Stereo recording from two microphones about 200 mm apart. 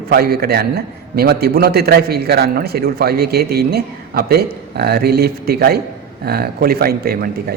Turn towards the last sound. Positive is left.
turn(degrees=-50)  # may be behind; listen again after turning